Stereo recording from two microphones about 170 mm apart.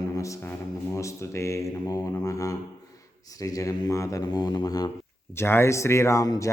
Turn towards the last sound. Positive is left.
turn(degrees=20)  # may be behind; listen again after turning